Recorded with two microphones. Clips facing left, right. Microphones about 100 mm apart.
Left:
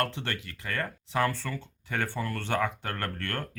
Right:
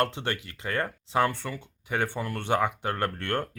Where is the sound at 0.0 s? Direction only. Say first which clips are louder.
Right 3 dB; 20° right (ahead or behind).